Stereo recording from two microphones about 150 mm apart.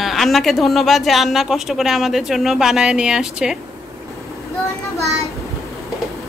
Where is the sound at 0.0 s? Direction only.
Centre (ahead or behind).